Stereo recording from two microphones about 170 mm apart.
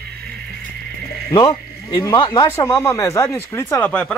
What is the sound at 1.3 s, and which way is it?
Speech, 30° left (ahead or behind).